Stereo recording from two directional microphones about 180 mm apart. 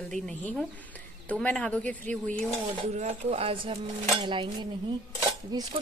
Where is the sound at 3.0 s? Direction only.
35° right (ahead or behind).